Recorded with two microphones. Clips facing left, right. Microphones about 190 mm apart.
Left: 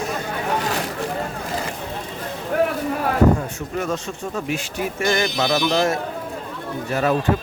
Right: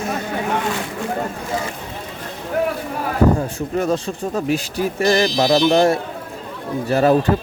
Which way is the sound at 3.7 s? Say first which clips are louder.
Right 5 dB; 35° right (ahead or behind).